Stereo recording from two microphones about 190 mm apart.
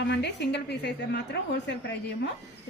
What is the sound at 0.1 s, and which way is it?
A woman's voice, 65° left (ahead or behind).